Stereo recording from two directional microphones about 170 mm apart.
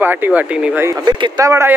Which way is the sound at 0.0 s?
10° right (ahead or behind).